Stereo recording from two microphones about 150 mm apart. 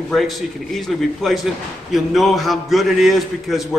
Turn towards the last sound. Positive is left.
turn(degrees=0)  # may be behind; listen again after turning